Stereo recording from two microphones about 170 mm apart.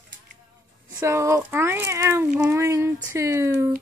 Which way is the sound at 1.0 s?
15° right (ahead or behind).